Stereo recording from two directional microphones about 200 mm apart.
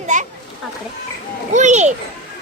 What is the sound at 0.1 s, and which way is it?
Speech, 40° right (ahead or behind).